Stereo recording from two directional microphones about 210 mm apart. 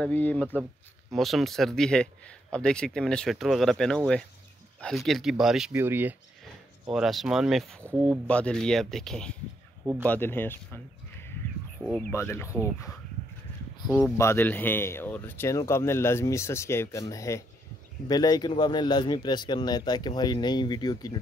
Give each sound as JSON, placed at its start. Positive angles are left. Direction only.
{"t": 0.0, "sound": "speech", "side_deg": 5}
{"t": 13.8, "sound": "a man's voice", "side_deg": 10}